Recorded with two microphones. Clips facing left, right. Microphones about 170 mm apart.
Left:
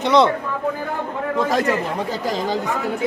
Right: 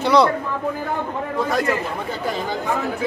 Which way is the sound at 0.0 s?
20° left (ahead or behind).